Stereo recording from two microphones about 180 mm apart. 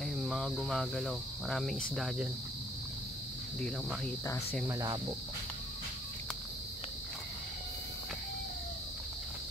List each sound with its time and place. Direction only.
0.0 s cricket: centre (ahead or behind)
3.6 s cricket: 5° left (ahead or behind)
4.6 s cricket: 20° right (ahead or behind)